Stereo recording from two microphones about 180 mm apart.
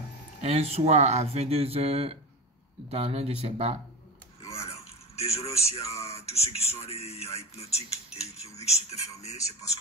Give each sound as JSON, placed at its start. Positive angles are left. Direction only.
{"t": 0.4, "sound": "speech", "side_deg": -35}
{"t": 4.4, "sound": "a sound", "side_deg": 35}
{"t": 5.5, "sound": "speech", "side_deg": 15}
{"t": 6.3, "sound": "speech", "side_deg": 35}